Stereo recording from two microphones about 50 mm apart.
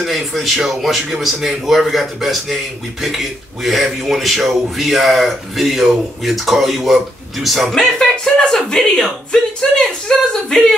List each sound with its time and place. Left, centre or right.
0.0 s speech: centre
7.7 s speech: centre